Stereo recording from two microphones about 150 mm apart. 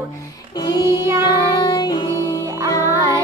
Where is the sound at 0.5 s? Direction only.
25° left (ahead or behind).